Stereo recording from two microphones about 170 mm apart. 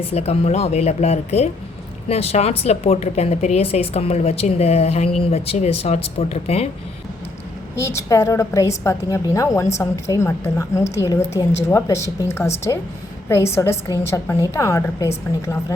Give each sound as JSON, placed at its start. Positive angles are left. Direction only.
{"t": 0.0, "sound": "a woman's voice", "side_deg": 35}
{"t": 7.8, "sound": "a woman's voice", "side_deg": 15}